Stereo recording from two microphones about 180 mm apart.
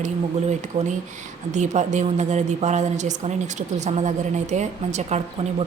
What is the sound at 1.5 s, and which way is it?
A woman's voice, 40° right (ahead or behind).